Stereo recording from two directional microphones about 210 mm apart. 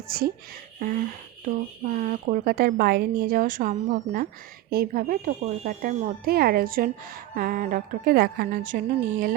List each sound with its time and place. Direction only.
0.1 s speech: 45° right (ahead or behind)
0.8 s a sound: 40° right (ahead or behind)
2.0 s speech: 40° right (ahead or behind)